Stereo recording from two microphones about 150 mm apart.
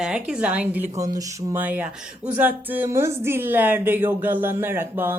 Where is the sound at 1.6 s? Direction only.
10° right (ahead or behind).